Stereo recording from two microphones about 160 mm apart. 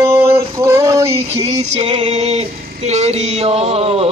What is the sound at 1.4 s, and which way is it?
Female singing, 35° right (ahead or behind).